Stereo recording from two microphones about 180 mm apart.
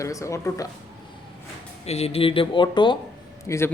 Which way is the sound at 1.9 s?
35° left (ahead or behind).